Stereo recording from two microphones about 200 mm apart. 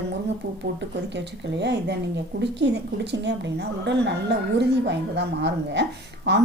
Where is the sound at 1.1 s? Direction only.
60° right (ahead or behind).